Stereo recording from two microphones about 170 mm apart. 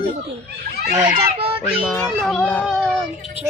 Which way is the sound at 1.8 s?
Centre (ahead or behind).